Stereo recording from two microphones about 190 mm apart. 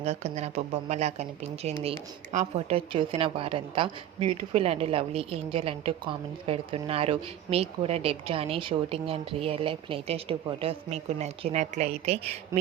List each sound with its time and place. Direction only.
0.0 s speech: 35° right (ahead or behind)